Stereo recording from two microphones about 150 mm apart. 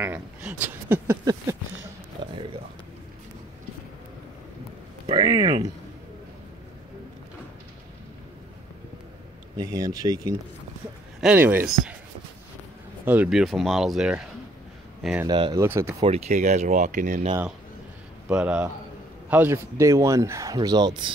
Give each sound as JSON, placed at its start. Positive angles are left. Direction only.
{"t": 0.0, "sound": "speech", "side_deg": -10}
{"t": 5.0, "sound": "a sound", "side_deg": -30}
{"t": 9.6, "sound": "speech", "side_deg": -25}
{"t": 11.1, "sound": "speech", "side_deg": -10}
{"t": 13.0, "sound": "speech", "side_deg": -10}
{"t": 15.2, "sound": "speech", "side_deg": -30}
{"t": 15.6, "sound": "speech", "side_deg": -15}
{"t": 16.0, "sound": "speech", "side_deg": -45}
{"t": 18.3, "sound": "speech", "side_deg": -10}